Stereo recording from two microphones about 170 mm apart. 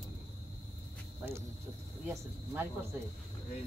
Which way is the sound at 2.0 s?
15° right (ahead or behind).